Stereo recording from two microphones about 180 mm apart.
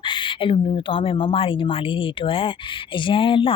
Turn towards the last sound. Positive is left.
turn(degrees=30)  # may be behind; listen again after turning